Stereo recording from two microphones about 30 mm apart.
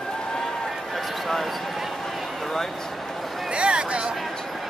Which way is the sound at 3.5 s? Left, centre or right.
Right.